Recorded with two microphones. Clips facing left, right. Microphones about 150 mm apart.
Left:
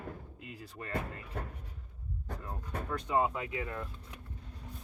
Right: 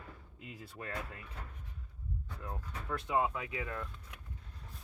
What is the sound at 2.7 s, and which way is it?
Speech, 55° left (ahead or behind).